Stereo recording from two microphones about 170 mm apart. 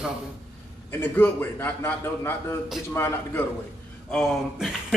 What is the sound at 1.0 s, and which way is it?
A man's voice, 10° left (ahead or behind).